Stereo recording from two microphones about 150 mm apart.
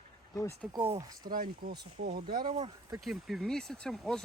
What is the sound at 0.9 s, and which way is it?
Speech, 25° right (ahead or behind).